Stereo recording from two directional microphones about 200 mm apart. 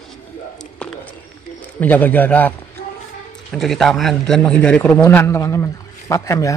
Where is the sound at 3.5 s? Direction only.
Centre (ahead or behind).